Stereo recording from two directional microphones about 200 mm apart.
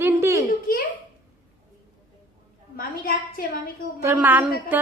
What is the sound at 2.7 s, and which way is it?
Speech, 45° left (ahead or behind).